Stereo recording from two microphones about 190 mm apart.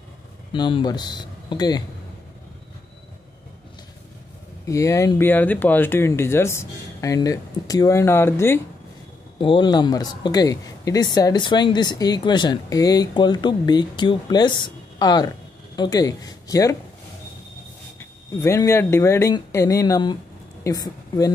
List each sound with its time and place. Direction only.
0.5 s speech: 25° left (ahead or behind)
4.6 s speech: 15° left (ahead or behind)
9.4 s speech: 25° left (ahead or behind)
17.9 s speech: 15° left (ahead or behind)